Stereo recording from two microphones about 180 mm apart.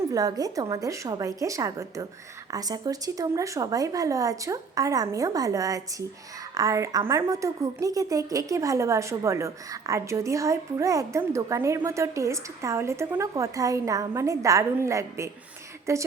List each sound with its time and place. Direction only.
0.1 s a woman's voice: 20° right (ahead or behind)